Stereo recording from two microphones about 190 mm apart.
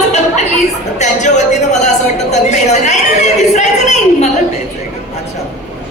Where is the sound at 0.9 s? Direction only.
40° left (ahead or behind).